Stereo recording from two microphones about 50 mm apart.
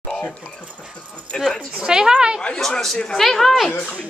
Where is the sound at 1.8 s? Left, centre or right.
Centre.